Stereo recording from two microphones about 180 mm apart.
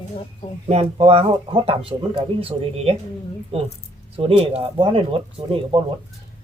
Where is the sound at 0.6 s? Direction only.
35° right (ahead or behind).